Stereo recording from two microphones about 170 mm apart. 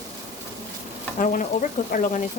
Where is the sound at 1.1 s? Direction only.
50° left (ahead or behind).